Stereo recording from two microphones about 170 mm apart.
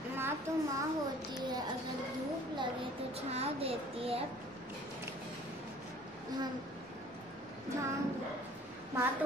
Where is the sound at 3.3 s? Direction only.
35° right (ahead or behind).